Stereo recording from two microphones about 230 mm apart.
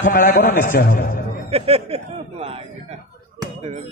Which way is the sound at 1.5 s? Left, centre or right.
Right.